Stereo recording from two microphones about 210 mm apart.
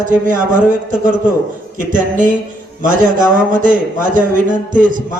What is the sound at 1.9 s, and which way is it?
A man's voice, 40° right (ahead or behind).